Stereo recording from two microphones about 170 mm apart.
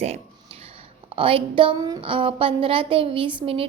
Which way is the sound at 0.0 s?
35° right (ahead or behind).